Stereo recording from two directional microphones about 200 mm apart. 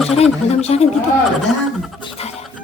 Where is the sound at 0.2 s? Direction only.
30° left (ahead or behind).